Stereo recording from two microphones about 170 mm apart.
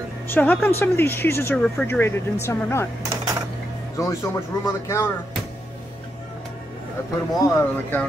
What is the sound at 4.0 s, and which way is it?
Speech, 15° left (ahead or behind).